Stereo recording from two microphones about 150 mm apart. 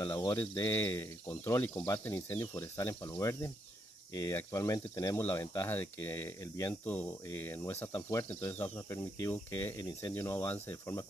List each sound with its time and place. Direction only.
0.0 s speech: 25° left (ahead or behind)